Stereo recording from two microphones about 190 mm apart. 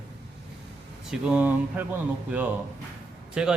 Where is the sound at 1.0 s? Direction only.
5° right (ahead or behind).